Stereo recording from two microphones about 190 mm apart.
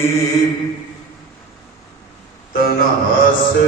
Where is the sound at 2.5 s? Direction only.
50° left (ahead or behind).